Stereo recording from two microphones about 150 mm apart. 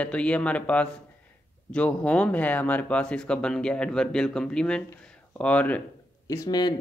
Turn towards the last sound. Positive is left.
turn(degrees=25)  # may be behind; listen again after turning